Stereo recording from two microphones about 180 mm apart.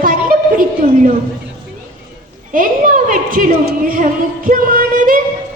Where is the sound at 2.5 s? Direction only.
50° right (ahead or behind).